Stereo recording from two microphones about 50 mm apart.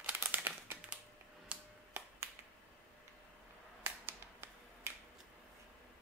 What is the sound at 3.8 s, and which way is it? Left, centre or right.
Finger snapping, right.